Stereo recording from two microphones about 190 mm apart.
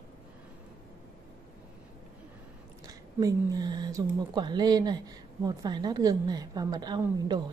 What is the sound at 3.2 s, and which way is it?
Speech, 20° right (ahead or behind).